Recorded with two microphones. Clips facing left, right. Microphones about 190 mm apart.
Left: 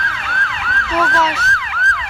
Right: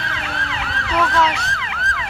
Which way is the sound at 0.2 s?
20° right (ahead or behind).